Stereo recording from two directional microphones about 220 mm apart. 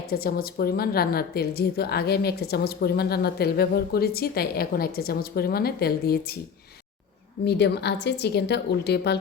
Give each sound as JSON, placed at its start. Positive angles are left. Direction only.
{"t": 0.1, "sound": "a woman's voice", "side_deg": 45}
{"t": 7.4, "sound": "a woman's voice", "side_deg": 50}